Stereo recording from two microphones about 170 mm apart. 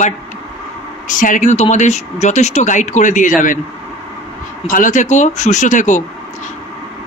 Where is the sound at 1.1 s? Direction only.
50° left (ahead or behind).